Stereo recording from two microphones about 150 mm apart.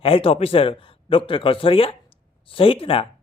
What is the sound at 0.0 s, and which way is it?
A man's voice, 40° left (ahead or behind).